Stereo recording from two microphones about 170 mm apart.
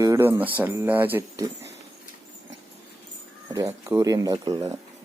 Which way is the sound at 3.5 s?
20° right (ahead or behind).